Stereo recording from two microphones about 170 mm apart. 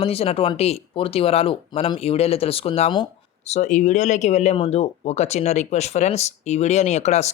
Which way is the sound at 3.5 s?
45° left (ahead or behind).